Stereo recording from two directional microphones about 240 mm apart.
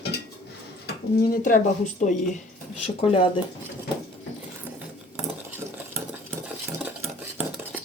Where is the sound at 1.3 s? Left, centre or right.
Left.